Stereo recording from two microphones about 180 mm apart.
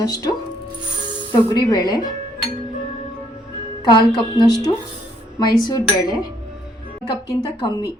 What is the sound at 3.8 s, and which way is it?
A woman's voice, 25° left (ahead or behind).